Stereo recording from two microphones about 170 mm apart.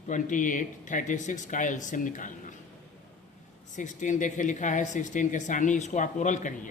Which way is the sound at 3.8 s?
45° left (ahead or behind).